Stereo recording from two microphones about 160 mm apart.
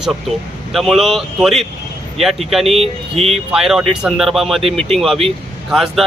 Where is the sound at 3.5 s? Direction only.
5° right (ahead or behind).